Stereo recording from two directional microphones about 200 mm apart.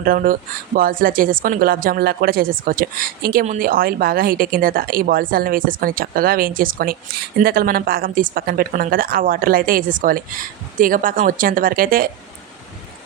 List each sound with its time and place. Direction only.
0.0 s a woman's voice: 45° right (ahead or behind)